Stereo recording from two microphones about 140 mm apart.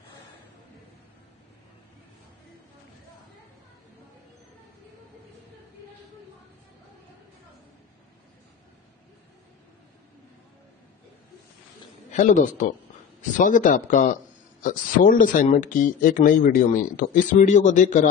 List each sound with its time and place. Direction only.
12.1 s a man's voice: 65° left (ahead or behind)